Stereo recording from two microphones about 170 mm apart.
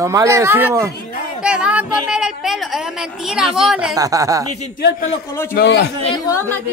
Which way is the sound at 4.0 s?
20° right (ahead or behind).